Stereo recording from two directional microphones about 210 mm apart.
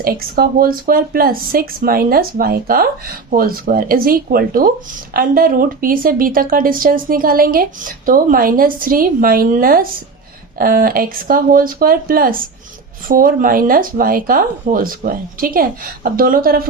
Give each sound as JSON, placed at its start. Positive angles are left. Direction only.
{"t": 0.0, "sound": "speech", "side_deg": -45}